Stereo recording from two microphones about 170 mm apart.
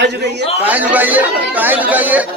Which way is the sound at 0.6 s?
10° right (ahead or behind).